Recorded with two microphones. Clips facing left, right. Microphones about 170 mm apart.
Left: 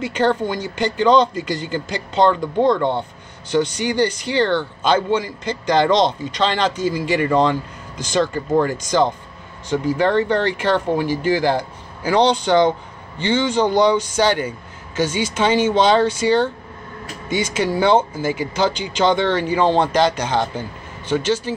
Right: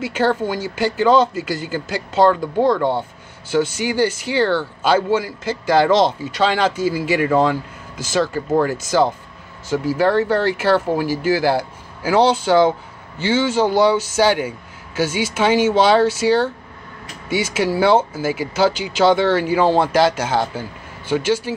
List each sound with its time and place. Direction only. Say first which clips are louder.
0.0 s speech: even; 5° right (ahead or behind)